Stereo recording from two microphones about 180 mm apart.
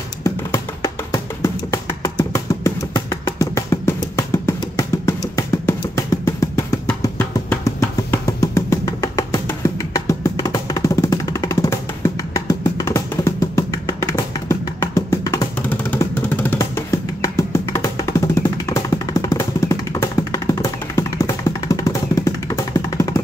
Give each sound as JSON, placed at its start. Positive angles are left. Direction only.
{"t": 0.2, "sound": "music", "side_deg": 15}